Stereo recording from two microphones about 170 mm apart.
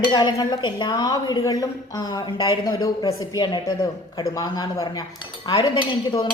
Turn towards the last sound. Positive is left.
turn(degrees=25)  # may be behind; listen again after turning